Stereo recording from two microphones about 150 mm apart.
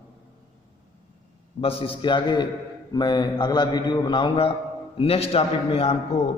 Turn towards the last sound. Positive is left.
turn(degrees=40)  # may be behind; listen again after turning